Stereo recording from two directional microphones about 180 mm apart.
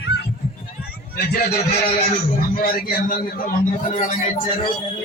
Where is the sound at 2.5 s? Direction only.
55° left (ahead or behind).